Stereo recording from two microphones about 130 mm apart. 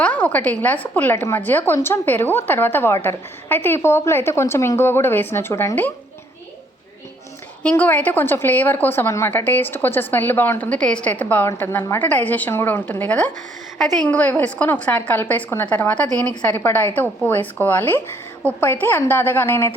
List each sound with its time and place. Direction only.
0.0 s a woman's voice: 10° left (ahead or behind)
7.6 s a woman's voice: 10° left (ahead or behind)